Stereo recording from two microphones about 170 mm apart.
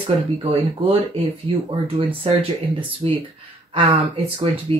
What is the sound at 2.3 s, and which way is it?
Speech, 35° right (ahead or behind).